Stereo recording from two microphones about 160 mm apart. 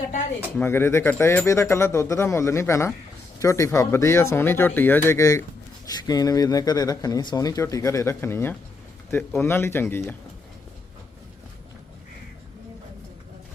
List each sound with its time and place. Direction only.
0.5 s speech: 15° left (ahead or behind)